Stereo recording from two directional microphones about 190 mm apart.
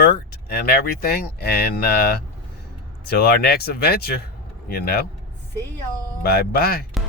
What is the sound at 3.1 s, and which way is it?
Speech, 55° left (ahead or behind).